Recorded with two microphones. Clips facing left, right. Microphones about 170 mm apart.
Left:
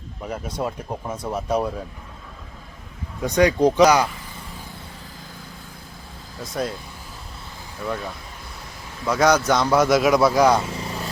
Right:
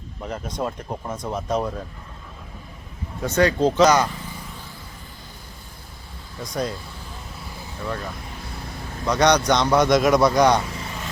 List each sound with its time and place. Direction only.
0.3 s speech: 10° left (ahead or behind)
3.2 s speech: 15° left (ahead or behind)
6.4 s a man's voice: 5° left (ahead or behind)
9.0 s a man's voice: 5° left (ahead or behind)
10.8 s vehicle: 35° left (ahead or behind)